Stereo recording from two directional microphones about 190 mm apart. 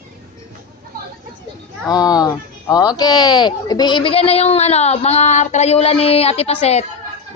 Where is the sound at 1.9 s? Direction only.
20° left (ahead or behind).